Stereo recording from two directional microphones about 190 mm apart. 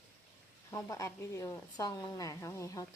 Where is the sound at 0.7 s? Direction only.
15° left (ahead or behind).